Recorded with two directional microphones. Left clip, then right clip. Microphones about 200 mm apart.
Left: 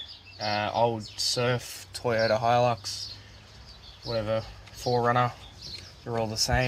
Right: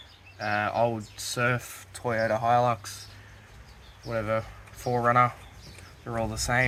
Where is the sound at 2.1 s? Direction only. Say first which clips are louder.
Left 1 dB; 35° left (ahead or behind).